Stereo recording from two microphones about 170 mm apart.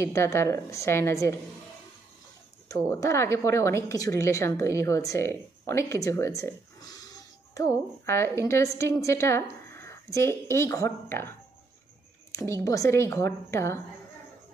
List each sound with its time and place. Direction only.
0.0 s a woman's voice: 15° left (ahead or behind)
2.7 s a woman's voice: 20° left (ahead or behind)